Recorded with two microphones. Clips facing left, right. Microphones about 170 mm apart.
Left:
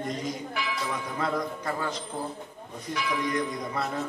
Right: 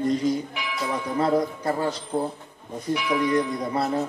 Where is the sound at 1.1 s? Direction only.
35° right (ahead or behind).